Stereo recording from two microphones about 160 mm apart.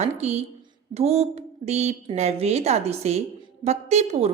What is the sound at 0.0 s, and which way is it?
A woman's voice, 45° right (ahead or behind).